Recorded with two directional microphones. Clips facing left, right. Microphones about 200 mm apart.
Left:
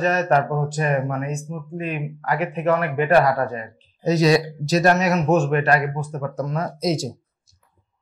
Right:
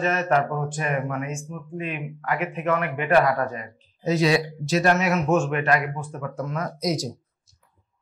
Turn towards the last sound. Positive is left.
turn(degrees=25)  # may be behind; listen again after turning